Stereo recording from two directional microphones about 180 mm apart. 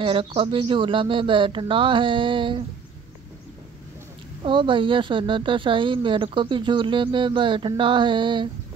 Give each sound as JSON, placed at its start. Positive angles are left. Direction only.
{"t": 0.0, "sound": "speech", "side_deg": -30}
{"t": 4.4, "sound": "speech", "side_deg": -25}